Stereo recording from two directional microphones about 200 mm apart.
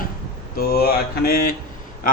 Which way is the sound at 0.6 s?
50° left (ahead or behind).